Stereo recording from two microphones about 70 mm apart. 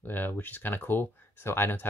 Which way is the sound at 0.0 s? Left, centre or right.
Left.